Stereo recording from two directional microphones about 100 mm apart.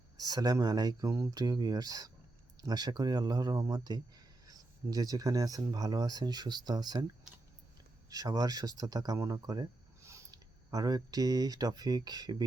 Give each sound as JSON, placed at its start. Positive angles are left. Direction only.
{"t": 0.2, "sound": "speech", "side_deg": -40}
{"t": 1.1, "sound": "speech", "side_deg": -25}
{"t": 1.4, "sound": "speech", "side_deg": -40}
{"t": 8.1, "sound": "speech", "side_deg": -40}
{"t": 10.3, "sound": "speech", "side_deg": -40}